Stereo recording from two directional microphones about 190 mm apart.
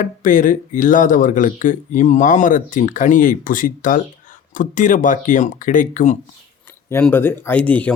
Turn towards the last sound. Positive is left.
turn(degrees=10)  # may be behind; listen again after turning